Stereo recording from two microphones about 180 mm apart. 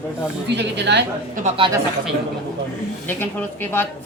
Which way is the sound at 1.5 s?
25° right (ahead or behind).